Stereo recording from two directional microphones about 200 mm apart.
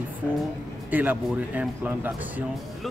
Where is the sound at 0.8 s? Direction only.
10° right (ahead or behind).